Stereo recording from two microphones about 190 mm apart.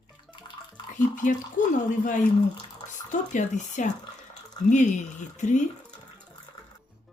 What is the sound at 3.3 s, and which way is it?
A woman's voice, 40° left (ahead or behind).